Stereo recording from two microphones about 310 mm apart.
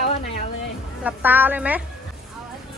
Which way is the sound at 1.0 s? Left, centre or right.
Centre.